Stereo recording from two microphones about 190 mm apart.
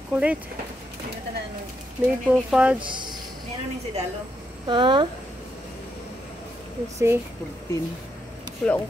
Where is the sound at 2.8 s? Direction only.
25° right (ahead or behind).